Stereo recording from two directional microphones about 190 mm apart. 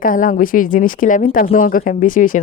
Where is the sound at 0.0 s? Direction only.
45° left (ahead or behind).